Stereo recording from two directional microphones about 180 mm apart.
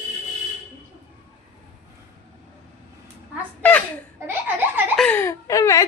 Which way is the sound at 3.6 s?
10° left (ahead or behind).